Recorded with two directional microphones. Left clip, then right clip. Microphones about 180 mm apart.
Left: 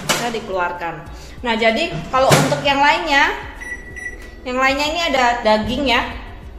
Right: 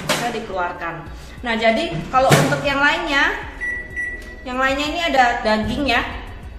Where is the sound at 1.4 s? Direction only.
40° left (ahead or behind).